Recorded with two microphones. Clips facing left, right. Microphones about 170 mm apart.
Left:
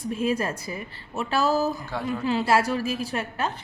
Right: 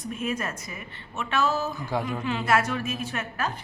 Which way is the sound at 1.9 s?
15° right (ahead or behind).